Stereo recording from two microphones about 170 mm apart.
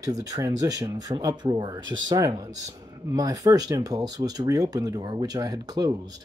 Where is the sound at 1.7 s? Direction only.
90° right.